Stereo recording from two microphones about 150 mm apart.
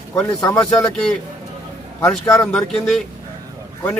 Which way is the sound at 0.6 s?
5° left (ahead or behind).